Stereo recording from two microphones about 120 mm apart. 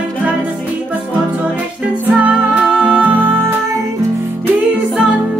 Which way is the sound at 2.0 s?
10° right (ahead or behind).